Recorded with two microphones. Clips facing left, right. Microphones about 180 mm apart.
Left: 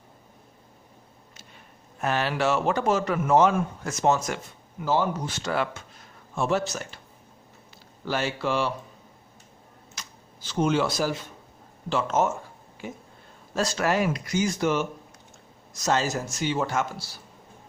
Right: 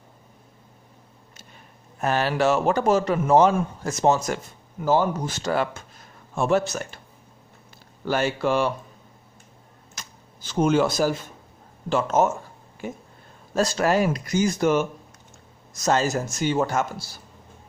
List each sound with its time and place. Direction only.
2.0 s a man's voice: 40° right (ahead or behind)
4.9 s speech: 45° right (ahead or behind)
6.3 s speech: 50° right (ahead or behind)
8.0 s speech: 50° right (ahead or behind)
9.9 s a sound: 50° right (ahead or behind)
11.9 s speech: 45° right (ahead or behind)
13.6 s a man's voice: 35° right (ahead or behind)